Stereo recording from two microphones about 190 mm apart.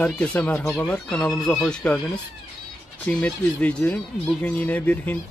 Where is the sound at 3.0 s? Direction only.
5° left (ahead or behind).